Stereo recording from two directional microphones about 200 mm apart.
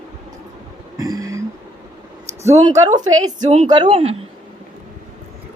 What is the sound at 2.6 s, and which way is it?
A woman's voice, 20° right (ahead or behind).